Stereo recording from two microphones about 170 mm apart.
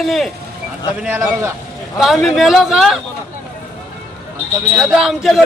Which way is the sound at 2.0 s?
Centre (ahead or behind).